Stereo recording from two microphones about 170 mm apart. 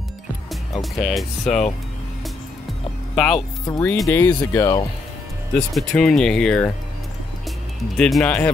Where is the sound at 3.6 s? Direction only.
15° left (ahead or behind).